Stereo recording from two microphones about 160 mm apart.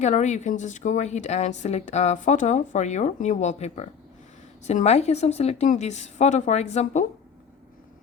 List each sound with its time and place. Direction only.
0.0 s a woman's voice: 45° left (ahead or behind)